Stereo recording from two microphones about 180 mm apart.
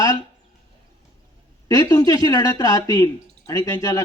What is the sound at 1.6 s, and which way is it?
A man's voice, 20° left (ahead or behind).